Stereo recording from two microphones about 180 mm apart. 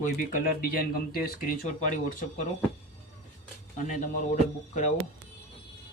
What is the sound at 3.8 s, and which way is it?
Speech, 45° left (ahead or behind).